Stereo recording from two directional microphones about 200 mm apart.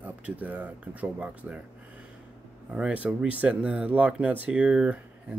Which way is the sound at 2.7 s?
5° right (ahead or behind).